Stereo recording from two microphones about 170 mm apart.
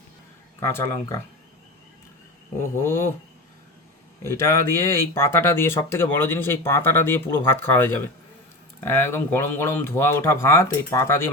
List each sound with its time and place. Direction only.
0.6 s speech: 15° left (ahead or behind)
2.8 s speech: 15° left (ahead or behind)
4.2 s speech: 15° left (ahead or behind)